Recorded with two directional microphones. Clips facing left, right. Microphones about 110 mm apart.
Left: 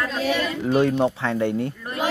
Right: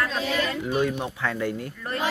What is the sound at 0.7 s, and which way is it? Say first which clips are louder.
Speech: left 8 dB; 30° left (ahead or behind).